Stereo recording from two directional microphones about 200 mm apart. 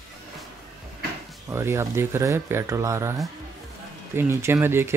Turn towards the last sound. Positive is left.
turn(degrees=-10)  # may be behind; listen again after turning